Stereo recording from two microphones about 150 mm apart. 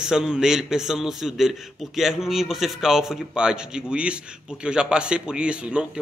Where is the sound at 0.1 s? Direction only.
5° right (ahead or behind).